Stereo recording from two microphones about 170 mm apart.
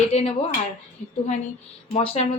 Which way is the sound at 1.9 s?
35° left (ahead or behind).